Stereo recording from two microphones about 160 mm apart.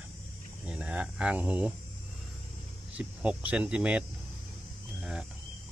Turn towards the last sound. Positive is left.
turn(degrees=0)  # may be behind; listen again after turning